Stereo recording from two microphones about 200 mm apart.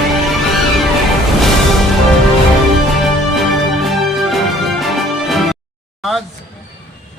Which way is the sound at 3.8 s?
Centre (ahead or behind).